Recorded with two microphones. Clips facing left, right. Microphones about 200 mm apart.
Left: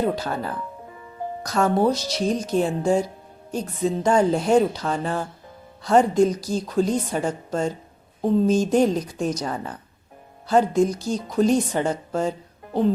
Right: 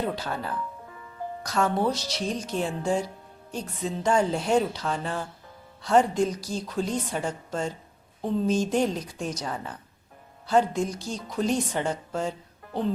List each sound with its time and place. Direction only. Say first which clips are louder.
0.0 s a woman's voice: left 6 dB; 45° left (ahead or behind)